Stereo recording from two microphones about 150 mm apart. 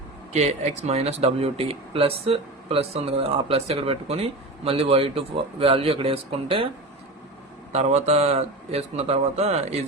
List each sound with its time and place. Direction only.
0.3 s a man's voice: 45° right (ahead or behind)
7.7 s a man's voice: 50° right (ahead or behind)